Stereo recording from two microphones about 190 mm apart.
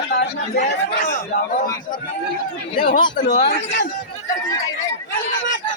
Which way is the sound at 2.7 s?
45° left (ahead or behind).